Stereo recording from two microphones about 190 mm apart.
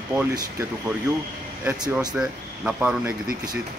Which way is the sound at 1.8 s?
20° right (ahead or behind).